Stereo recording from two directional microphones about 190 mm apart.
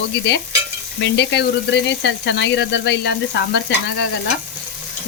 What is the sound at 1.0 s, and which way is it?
Speech, 65° left (ahead or behind).